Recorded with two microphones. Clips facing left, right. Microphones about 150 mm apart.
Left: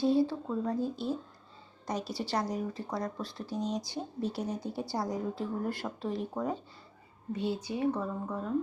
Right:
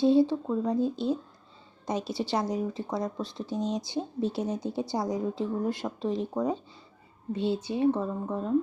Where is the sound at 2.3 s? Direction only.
25° right (ahead or behind).